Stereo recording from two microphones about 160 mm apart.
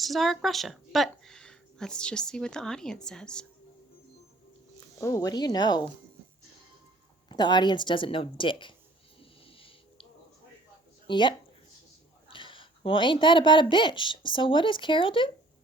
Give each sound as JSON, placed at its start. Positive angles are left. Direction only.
{"t": 0.0, "sound": "a woman's voice", "side_deg": 0}
{"t": 4.9, "sound": "speech", "side_deg": 20}
{"t": 7.3, "sound": "speech", "side_deg": 25}
{"t": 9.5, "sound": "a sound", "side_deg": 35}
{"t": 11.0, "sound": "a woman's voice", "side_deg": 30}